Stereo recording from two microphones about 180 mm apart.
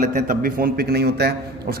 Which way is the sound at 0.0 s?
45° right (ahead or behind).